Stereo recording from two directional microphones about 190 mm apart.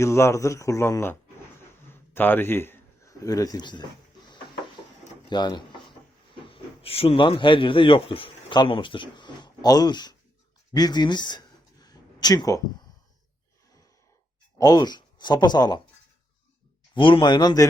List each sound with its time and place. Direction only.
0.0 s a man's voice: 15° left (ahead or behind)
5.3 s speech: 25° left (ahead or behind)
10.8 s a sound: 20° left (ahead or behind)
14.6 s speech: 20° left (ahead or behind)
16.9 s speech: 25° left (ahead or behind)